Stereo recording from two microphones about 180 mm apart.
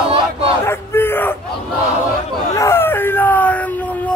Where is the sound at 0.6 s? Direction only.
15° left (ahead or behind).